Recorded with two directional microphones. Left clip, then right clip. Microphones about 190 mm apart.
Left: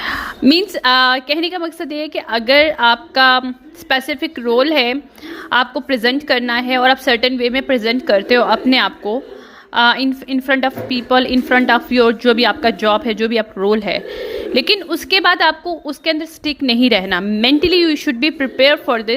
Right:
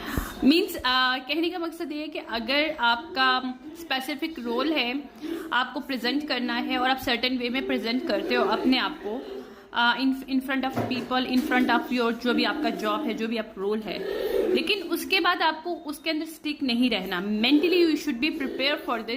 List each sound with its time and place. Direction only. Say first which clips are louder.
0.0 s a woman's voice: left 10 dB; 50° left (ahead or behind)